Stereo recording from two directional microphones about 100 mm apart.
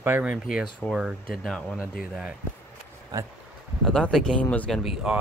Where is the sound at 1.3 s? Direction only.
5° left (ahead or behind).